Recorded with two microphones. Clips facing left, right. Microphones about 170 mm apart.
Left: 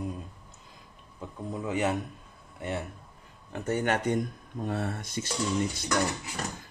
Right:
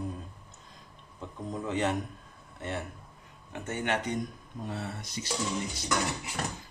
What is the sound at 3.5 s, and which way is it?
Speech, 35° left (ahead or behind).